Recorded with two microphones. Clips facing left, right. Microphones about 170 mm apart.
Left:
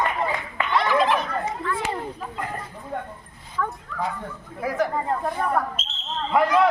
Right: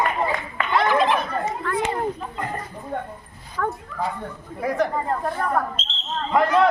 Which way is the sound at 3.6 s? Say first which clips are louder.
Right 2 dB; 55° right (ahead or behind).